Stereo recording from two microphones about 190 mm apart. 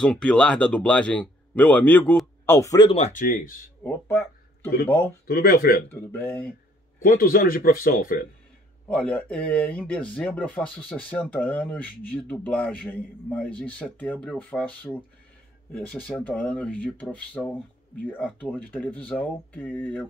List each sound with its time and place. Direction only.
0.0 s speech: 5° left (ahead or behind)
2.9 s speech: 40° left (ahead or behind)
3.8 s speech: 10° left (ahead or behind)
5.2 s speech: 50° left (ahead or behind)
5.9 s speech: 10° left (ahead or behind)
7.0 s speech: 50° left (ahead or behind)
8.8 s speech: 5° left (ahead or behind)